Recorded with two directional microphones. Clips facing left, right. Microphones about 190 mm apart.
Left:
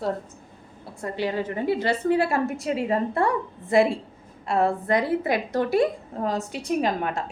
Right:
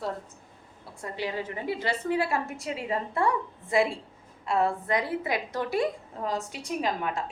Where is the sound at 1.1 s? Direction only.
60° left (ahead or behind).